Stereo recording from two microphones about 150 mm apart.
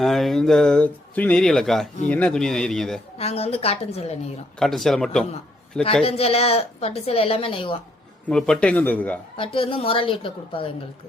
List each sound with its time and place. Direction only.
0.0 s speech: centre (ahead or behind)
3.2 s a woman's voice: 45° left (ahead or behind)
4.6 s speech: centre (ahead or behind)
6.1 s a woman's voice: 40° left (ahead or behind)
8.3 s speech: 5° left (ahead or behind)
9.4 s a woman's voice: 35° left (ahead or behind)